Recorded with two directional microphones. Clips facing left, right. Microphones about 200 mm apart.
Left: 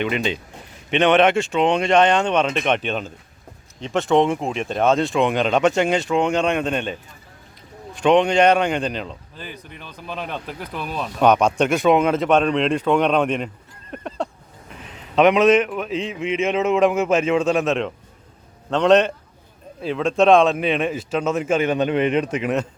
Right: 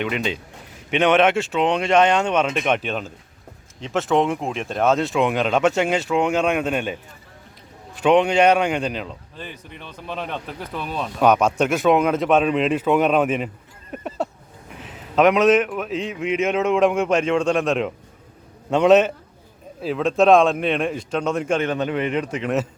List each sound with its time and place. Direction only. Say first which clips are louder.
0.0 s speech: left 2 dB; centre (ahead or behind)
13.9 s a sound: right 1 dB; 5° right (ahead or behind)
15.1 s speech: left 1 dB; centre (ahead or behind)
21.8 s a man's voice: left 4 dB; 20° left (ahead or behind)